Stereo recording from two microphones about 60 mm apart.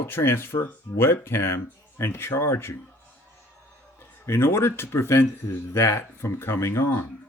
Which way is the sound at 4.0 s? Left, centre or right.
Left.